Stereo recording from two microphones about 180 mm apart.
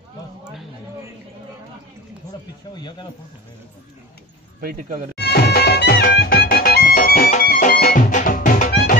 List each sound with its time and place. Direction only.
2.7 s speech: 25° left (ahead or behind)
4.6 s speech: 50° right (ahead or behind)
5.1 s music: 65° left (ahead or behind)
8.1 s music: 45° left (ahead or behind)